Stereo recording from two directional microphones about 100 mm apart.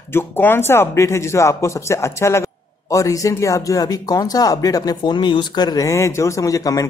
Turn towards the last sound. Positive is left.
turn(degrees=35)  # may be behind; listen again after turning